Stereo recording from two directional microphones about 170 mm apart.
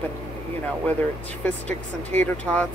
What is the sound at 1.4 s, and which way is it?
Speech, 10° left (ahead or behind).